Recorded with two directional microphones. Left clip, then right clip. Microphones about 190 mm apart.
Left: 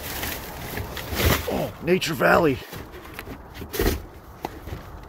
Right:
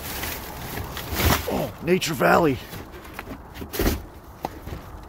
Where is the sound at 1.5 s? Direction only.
20° right (ahead or behind).